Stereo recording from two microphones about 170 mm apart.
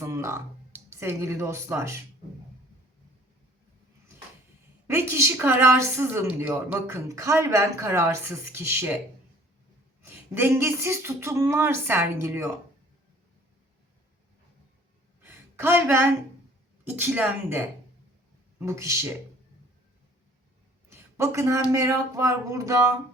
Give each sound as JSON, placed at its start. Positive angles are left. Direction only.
{"t": 0.0, "sound": "speech", "side_deg": -15}
{"t": 4.9, "sound": "a woman's voice", "side_deg": -15}
{"t": 10.1, "sound": "a woman's voice", "side_deg": -10}
{"t": 15.2, "sound": "a sound", "side_deg": -15}
{"t": 16.9, "sound": "a woman's voice", "side_deg": -10}
{"t": 20.9, "sound": "a woman's voice", "side_deg": -15}